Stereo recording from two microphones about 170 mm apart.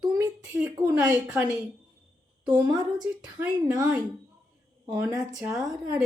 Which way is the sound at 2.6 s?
25° right (ahead or behind).